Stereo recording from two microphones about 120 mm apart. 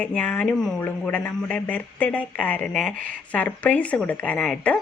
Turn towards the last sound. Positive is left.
turn(degrees=5)  # may be behind; listen again after turning